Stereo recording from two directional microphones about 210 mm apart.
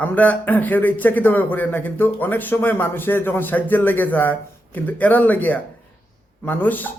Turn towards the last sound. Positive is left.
turn(degrees=10)  # may be behind; listen again after turning